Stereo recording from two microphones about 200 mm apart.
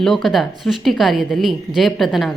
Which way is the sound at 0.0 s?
Centre (ahead or behind).